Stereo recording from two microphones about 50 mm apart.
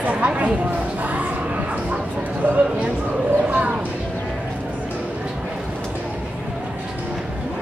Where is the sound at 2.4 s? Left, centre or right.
Right.